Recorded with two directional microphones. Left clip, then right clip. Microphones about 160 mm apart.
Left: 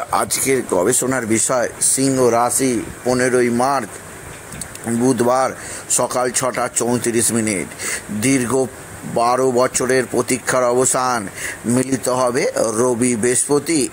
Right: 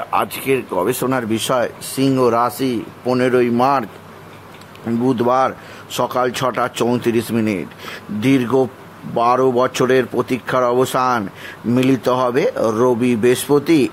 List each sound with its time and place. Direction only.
0.7 s speech: 15° left (ahead or behind)
1.0 s speech: centre (ahead or behind)
2.1 s speech: 10° right (ahead or behind)
5.0 s speech: centre (ahead or behind)